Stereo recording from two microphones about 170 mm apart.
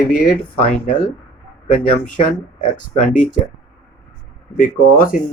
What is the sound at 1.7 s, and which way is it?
Speech, 50° left (ahead or behind).